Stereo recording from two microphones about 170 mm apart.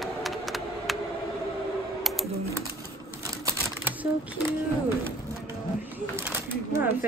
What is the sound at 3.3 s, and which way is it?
Typewriter, 20° right (ahead or behind).